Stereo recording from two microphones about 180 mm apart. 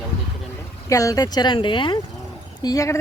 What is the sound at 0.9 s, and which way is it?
Speech, 20° left (ahead or behind).